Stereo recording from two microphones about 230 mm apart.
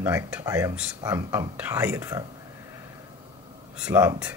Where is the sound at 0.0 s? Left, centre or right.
Centre.